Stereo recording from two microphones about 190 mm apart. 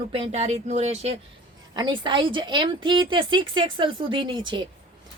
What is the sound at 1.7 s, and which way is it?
A woman's voice, 25° right (ahead or behind).